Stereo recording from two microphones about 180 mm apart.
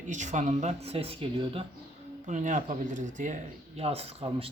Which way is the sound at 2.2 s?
45° right (ahead or behind).